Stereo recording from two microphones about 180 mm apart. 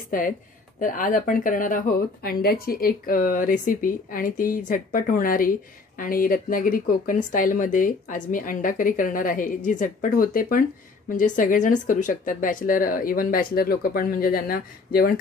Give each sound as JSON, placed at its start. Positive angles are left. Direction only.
{"t": 0.7, "sound": "a woman's voice", "side_deg": 50}